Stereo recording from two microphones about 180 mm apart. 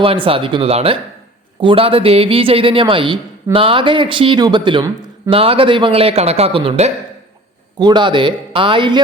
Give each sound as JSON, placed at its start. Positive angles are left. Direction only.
{"t": 0.0, "sound": "speech", "side_deg": -30}